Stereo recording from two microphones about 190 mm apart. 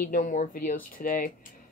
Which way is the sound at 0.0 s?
45° left (ahead or behind).